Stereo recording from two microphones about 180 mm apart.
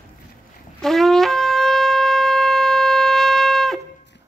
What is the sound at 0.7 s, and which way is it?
Shofar, centre (ahead or behind).